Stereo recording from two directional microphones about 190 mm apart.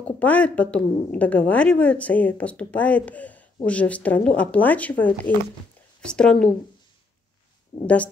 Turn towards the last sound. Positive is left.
turn(degrees=25)  # may be behind; listen again after turning